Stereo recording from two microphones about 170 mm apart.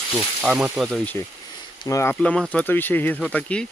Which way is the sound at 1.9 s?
20° left (ahead or behind).